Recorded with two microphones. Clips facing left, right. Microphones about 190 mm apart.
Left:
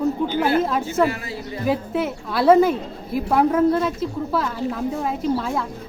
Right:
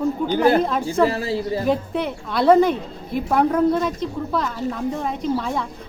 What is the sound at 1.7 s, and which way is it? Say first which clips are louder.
A woman's voice: left 4 dB; 5° left (ahead or behind).